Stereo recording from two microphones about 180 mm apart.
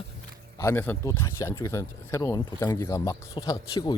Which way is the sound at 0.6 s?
15° left (ahead or behind).